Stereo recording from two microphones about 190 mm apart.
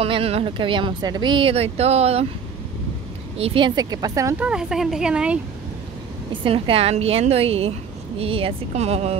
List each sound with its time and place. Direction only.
0.0 s speech: 30° right (ahead or behind)
3.3 s speech: 30° right (ahead or behind)
4.5 s speech: 5° right (ahead or behind)
6.3 s a woman's voice: 25° right (ahead or behind)